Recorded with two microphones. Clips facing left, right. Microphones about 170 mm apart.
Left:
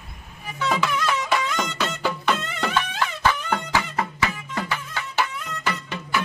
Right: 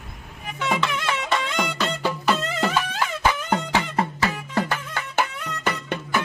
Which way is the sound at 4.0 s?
35° right (ahead or behind).